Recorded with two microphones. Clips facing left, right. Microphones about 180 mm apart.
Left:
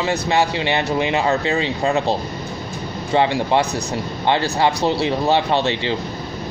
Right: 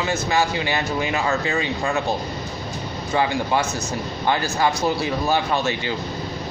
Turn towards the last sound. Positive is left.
turn(degrees=25)  # may be behind; listen again after turning